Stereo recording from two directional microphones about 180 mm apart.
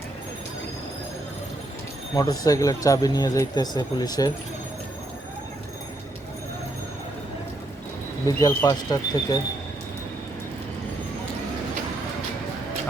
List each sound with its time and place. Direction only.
2.1 s speech: 20° left (ahead or behind)
8.4 s speech: 20° left (ahead or behind)